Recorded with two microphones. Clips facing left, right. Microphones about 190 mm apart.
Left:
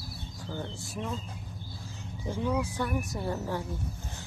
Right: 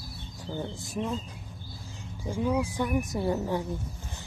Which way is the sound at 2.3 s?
10° right (ahead or behind).